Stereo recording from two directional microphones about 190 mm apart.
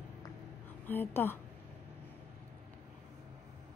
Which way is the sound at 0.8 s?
10° left (ahead or behind).